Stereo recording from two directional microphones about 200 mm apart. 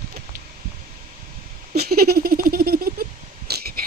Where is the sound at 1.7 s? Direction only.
50° right (ahead or behind).